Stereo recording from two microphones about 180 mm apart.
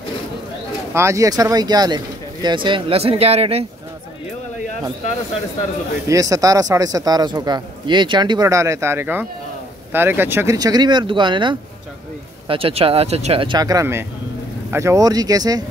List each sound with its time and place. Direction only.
0.9 s speech: 15° right (ahead or behind); by 3.6 s 35° right (ahead or behind)
6.0 s speech: 20° right (ahead or behind)